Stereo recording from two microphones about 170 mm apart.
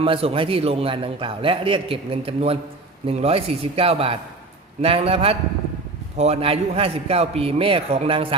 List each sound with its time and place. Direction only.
0.0 s a man's voice: 35° right (ahead or behind)